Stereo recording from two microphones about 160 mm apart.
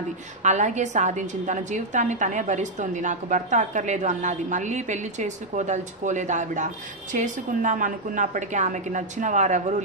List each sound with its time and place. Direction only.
0.4 s a woman's voice: 50° right (ahead or behind)